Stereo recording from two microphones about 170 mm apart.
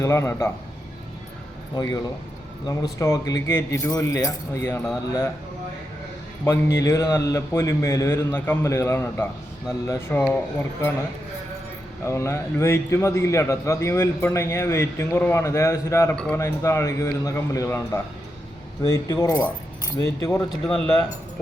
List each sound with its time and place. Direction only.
0.0 s a man's voice: 15° left (ahead or behind)
1.7 s a man's voice: 25° left (ahead or behind)
6.4 s a man's voice: 15° left (ahead or behind)
12.0 s a man's voice: 15° left (ahead or behind)
16.1 s speech: 5° left (ahead or behind)
16.4 s a man's voice: 15° left (ahead or behind)